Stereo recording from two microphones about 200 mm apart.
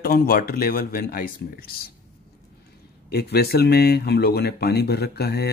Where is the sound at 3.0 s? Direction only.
55° left (ahead or behind).